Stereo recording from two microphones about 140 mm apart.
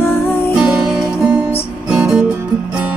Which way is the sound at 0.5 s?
5° right (ahead or behind).